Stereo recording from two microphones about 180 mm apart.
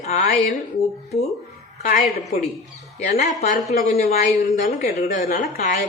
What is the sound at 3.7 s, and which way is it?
A woman's voice, 55° left (ahead or behind).